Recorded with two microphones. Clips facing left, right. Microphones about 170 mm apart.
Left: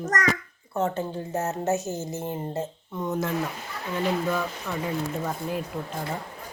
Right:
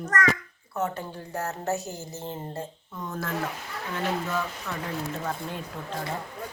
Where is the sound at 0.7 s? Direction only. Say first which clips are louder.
Left 4 dB; 25° left (ahead or behind).